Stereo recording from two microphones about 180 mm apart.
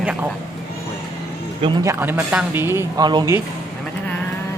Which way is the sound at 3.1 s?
25° right (ahead or behind).